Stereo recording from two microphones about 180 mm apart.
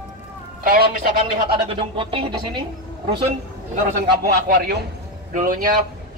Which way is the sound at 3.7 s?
50° right (ahead or behind).